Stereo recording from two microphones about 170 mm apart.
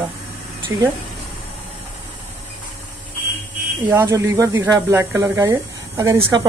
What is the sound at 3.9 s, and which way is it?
A woman's voice, 15° right (ahead or behind).